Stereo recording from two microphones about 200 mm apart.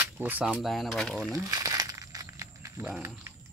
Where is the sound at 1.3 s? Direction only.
15° right (ahead or behind).